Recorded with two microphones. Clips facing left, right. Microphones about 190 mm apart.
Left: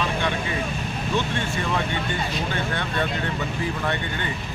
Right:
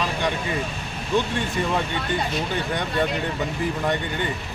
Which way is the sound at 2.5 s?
15° right (ahead or behind).